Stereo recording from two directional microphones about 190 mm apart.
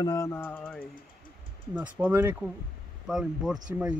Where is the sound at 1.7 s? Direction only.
10° right (ahead or behind).